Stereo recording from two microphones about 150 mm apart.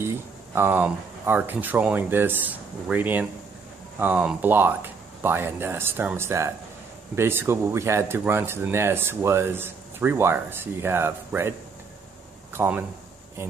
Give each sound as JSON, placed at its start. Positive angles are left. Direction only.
{"t": 0.6, "sound": "speech", "side_deg": -10}
{"t": 12.5, "sound": "speech", "side_deg": -15}